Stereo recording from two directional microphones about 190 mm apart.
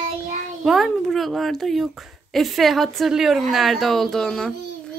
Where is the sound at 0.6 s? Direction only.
Centre (ahead or behind).